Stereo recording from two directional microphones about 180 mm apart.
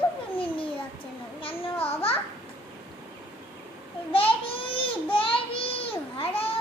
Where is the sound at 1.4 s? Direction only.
30° left (ahead or behind).